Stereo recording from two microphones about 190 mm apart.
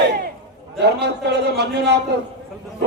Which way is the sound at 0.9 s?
60° right (ahead or behind).